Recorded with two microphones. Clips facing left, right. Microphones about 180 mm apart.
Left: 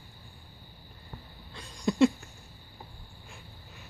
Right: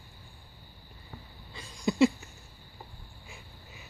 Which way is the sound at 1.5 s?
Centre (ahead or behind).